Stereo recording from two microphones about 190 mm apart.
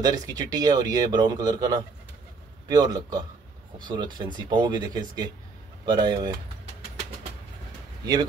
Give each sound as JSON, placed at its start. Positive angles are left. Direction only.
{"t": 0.0, "sound": "speech", "side_deg": -20}